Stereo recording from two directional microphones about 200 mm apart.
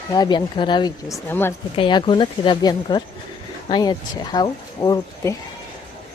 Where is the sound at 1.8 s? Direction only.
25° left (ahead or behind).